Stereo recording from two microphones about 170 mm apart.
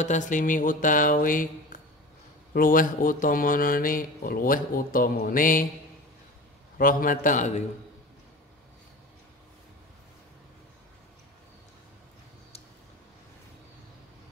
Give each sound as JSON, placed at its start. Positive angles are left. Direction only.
{"t": 0.0, "sound": "mantra", "side_deg": 45}
{"t": 2.5, "sound": "speech", "side_deg": 55}
{"t": 6.8, "sound": "mantra", "side_deg": 55}